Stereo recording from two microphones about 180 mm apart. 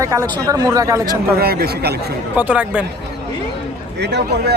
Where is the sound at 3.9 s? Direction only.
70° right (ahead or behind).